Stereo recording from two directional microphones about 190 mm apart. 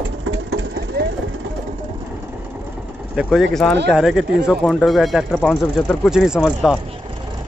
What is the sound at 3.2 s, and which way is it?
Speech, centre (ahead or behind).